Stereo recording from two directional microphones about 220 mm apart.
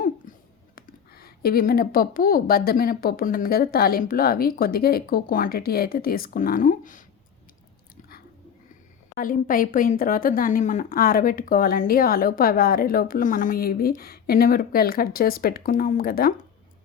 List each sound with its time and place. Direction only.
0.8 s a woman's voice: 45° left (ahead or behind)
9.1 s a woman's voice: 40° left (ahead or behind)